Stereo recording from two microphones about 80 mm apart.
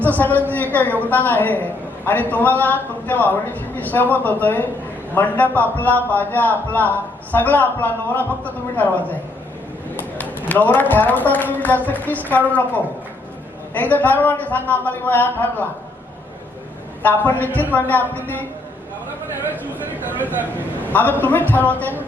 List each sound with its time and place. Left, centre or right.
0.0 s a man's voice: left
10.5 s a man's voice: left
17.0 s a man's voice: left
20.1 s speech: right
20.9 s a man's voice: left